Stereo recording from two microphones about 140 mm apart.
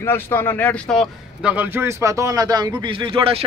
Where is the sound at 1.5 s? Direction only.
15° right (ahead or behind).